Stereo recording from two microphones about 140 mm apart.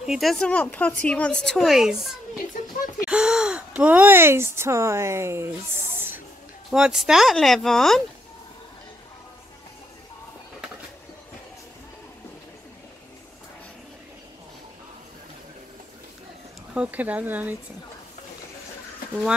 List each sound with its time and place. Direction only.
0.0 s a woman's voice: centre (ahead or behind)
3.1 s speech: 5° right (ahead or behind)
5.9 s a sound: 15° right (ahead or behind)
6.7 s a woman's voice: 5° right (ahead or behind)
16.7 s speech: 10° right (ahead or behind)